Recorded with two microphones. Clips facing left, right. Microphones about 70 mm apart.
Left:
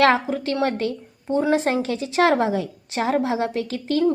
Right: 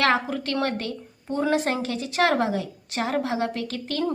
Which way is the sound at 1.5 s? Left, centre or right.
Left.